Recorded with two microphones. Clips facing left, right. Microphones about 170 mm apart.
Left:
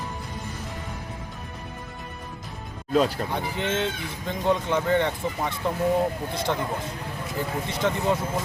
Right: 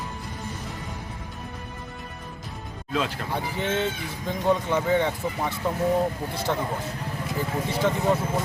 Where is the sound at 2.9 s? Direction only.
40° left (ahead or behind).